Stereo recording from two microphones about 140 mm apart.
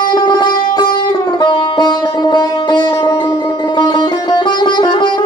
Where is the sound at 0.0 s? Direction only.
30° left (ahead or behind).